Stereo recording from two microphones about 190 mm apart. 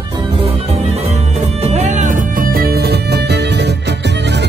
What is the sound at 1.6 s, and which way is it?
Music, 35° right (ahead or behind).